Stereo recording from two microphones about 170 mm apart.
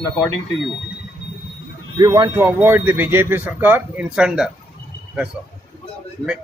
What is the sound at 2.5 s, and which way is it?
Speech, 10° right (ahead or behind).